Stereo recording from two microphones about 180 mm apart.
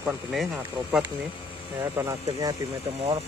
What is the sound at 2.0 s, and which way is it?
Speech, 20° right (ahead or behind).